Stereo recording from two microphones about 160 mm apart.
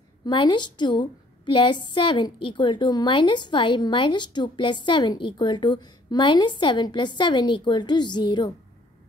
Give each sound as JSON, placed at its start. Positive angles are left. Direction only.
{"t": 0.2, "sound": "a woman's voice", "side_deg": 30}